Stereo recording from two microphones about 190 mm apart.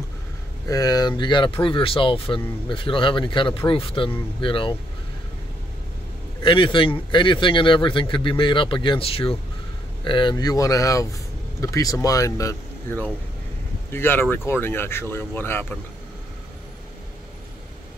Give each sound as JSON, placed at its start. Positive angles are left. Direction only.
{"t": 0.7, "sound": "speech", "side_deg": 20}
{"t": 6.4, "sound": "speech", "side_deg": 25}